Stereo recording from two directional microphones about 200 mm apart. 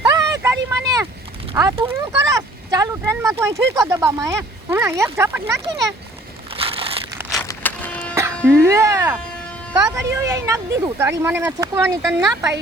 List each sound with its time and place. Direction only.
0.0 s vehicle: 15° right (ahead or behind)
1.6 s speech: 15° right (ahead or behind)
6.6 s crumpling: 30° right (ahead or behind)
7.4 s vehicle: 10° left (ahead or behind)
8.4 s speech: 15° right (ahead or behind)